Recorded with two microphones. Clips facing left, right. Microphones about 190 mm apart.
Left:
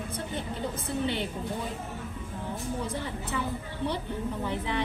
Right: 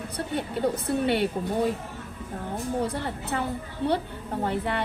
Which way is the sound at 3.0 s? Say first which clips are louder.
Right 3 dB; 60° right (ahead or behind).